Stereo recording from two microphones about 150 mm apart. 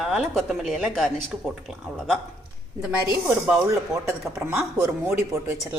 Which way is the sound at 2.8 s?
10° right (ahead or behind).